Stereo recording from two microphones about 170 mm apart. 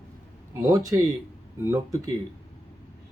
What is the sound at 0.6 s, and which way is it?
Speech, 20° right (ahead or behind).